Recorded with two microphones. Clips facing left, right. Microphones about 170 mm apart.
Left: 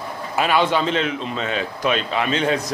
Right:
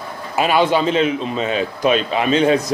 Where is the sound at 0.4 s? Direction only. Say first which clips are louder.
Right 3 dB; 10° right (ahead or behind).